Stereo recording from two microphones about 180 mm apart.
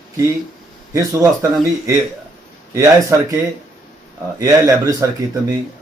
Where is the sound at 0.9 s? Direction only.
15° right (ahead or behind).